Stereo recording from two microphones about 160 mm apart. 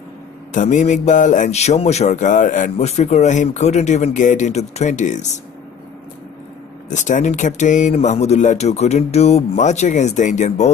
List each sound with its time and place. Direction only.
0.5 s a man's voice: 50° left (ahead or behind)
6.9 s a man's voice: 50° left (ahead or behind)